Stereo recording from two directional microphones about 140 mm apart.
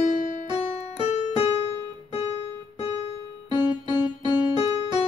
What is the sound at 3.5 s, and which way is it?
Music, 35° right (ahead or behind).